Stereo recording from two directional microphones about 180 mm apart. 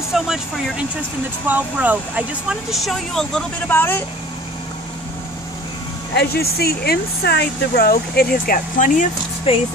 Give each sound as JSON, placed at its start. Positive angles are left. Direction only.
{"t": 0.1, "sound": "a woman's voice", "side_deg": -5}
{"t": 6.1, "sound": "speech", "side_deg": 60}
{"t": 9.5, "sound": "speech", "side_deg": 30}